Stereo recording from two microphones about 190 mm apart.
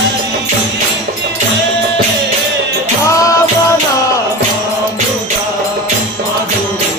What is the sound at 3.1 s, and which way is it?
Music, 15° left (ahead or behind).